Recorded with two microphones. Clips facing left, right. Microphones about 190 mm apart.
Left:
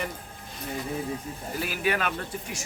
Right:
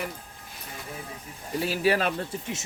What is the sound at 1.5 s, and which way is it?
Speech, 30° right (ahead or behind).